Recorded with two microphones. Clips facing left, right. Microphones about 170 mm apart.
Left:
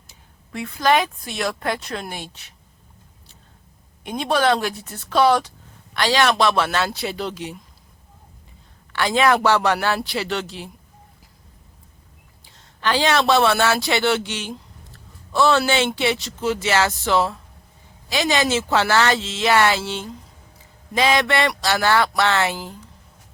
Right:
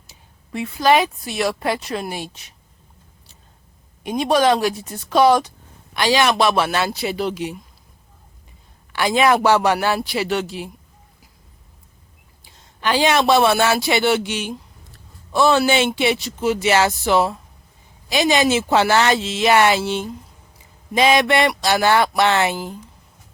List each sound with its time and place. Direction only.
0.5 s speech: 15° right (ahead or behind)
4.0 s speech: 15° right (ahead or behind)
8.9 s speech: 15° right (ahead or behind)
12.8 s speech: 15° right (ahead or behind)